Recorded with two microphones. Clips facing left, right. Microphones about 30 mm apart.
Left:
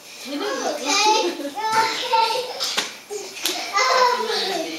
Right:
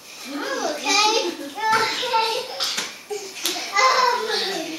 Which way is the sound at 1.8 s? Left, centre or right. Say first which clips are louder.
Left 2 dB; centre.